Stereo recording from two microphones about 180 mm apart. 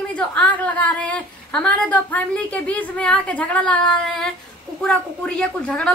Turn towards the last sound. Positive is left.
turn(degrees=5)  # may be behind; listen again after turning